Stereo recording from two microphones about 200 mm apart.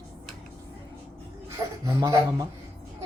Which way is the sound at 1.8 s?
20° right (ahead or behind).